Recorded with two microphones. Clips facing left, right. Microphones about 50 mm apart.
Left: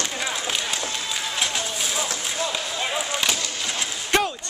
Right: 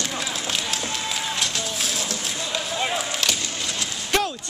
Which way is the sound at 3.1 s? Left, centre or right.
Centre.